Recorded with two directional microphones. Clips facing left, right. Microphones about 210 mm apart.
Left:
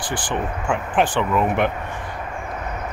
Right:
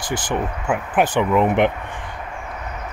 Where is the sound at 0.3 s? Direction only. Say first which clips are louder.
Right 1 dB; 10° right (ahead or behind).